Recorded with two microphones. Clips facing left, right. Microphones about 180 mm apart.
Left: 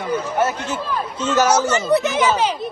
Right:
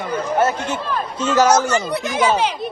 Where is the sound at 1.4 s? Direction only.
10° left (ahead or behind).